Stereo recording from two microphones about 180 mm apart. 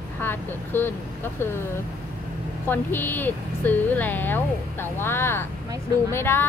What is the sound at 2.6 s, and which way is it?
A woman's voice, 10° left (ahead or behind).